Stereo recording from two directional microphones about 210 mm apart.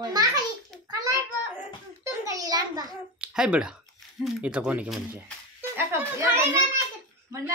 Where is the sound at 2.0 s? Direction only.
15° right (ahead or behind).